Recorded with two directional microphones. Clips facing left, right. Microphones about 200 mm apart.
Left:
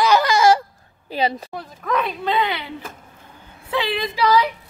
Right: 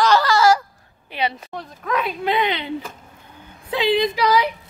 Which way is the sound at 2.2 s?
20° right (ahead or behind).